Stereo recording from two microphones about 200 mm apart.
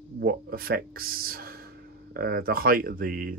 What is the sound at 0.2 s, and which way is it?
Speech, 50° right (ahead or behind).